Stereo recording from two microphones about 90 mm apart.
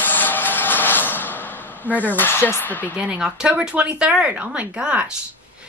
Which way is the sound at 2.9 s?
10° right (ahead or behind).